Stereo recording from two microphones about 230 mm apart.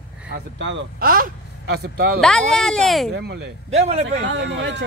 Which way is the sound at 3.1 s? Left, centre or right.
Right.